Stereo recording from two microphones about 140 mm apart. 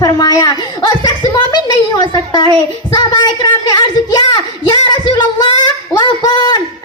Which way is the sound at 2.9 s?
30° left (ahead or behind).